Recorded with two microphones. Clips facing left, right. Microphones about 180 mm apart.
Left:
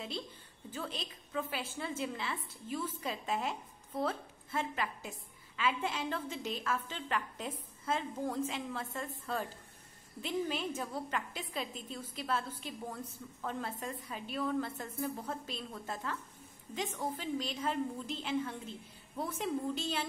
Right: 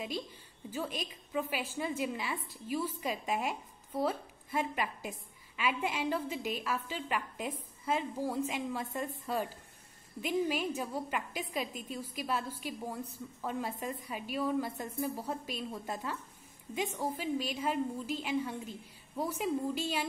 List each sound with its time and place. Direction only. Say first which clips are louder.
0.7 s a woman's voice: right 4 dB; 15° right (ahead or behind)